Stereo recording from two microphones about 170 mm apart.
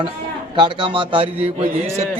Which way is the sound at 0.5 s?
30° right (ahead or behind).